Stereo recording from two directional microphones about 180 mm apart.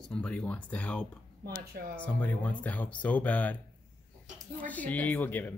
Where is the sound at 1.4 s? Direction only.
60° right (ahead or behind).